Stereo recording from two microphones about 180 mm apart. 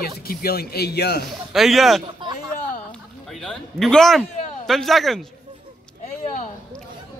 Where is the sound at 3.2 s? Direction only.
5° left (ahead or behind).